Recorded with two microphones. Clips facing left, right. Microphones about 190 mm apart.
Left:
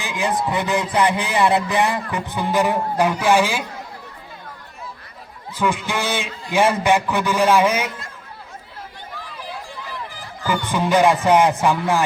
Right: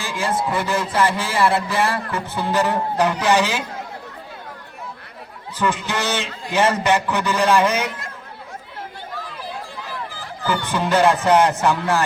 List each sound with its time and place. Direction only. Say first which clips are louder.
0.0 s a man's voice: left 1 dB; 15° left (ahead or behind)
5.5 s a man's voice: left 1 dB; 10° left (ahead or behind)
10.1 s speech: even; 15° left (ahead or behind)